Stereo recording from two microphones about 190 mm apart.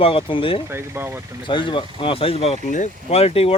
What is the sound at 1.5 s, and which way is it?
Speech, 25° left (ahead or behind).